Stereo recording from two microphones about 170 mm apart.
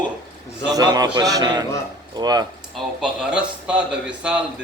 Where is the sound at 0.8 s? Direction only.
25° right (ahead or behind).